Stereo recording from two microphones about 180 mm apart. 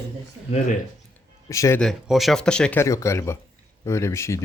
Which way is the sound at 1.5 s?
15° left (ahead or behind).